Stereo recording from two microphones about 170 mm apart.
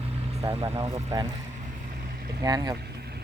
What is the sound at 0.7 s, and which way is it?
Speech, 15° right (ahead or behind).